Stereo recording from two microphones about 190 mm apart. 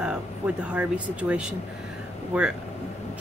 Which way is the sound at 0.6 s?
5° right (ahead or behind).